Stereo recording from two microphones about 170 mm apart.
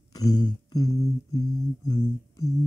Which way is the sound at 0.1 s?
25° left (ahead or behind).